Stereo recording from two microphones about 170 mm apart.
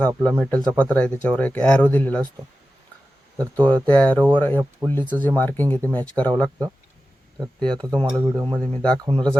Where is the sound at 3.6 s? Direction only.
10° left (ahead or behind).